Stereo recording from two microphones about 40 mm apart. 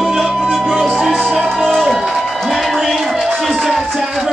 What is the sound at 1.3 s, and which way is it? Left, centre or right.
Music, centre.